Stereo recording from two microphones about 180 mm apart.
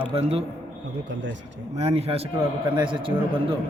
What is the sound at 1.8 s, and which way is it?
A man's voice, 35° right (ahead or behind).